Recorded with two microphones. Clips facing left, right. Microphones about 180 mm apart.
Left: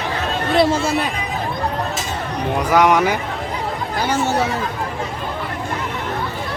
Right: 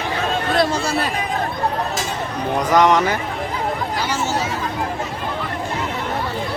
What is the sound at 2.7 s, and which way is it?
Speech, 10° left (ahead or behind).